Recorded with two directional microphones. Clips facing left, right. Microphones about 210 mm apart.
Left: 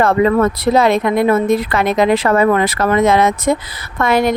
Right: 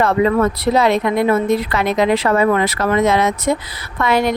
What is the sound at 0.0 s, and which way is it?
Speech, 50° left (ahead or behind).